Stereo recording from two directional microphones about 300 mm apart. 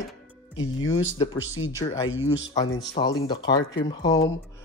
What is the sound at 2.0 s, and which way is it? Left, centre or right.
Speech, left.